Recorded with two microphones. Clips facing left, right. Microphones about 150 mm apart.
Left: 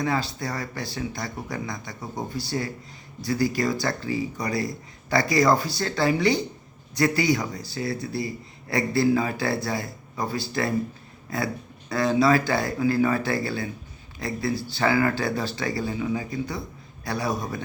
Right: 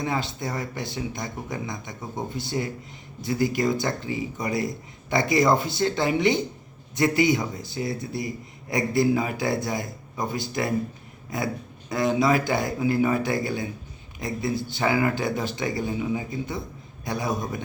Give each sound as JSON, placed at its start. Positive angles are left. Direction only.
{"t": 0.0, "sound": "speech", "side_deg": -20}